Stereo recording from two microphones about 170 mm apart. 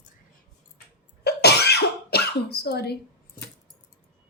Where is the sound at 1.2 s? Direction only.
70° left (ahead or behind).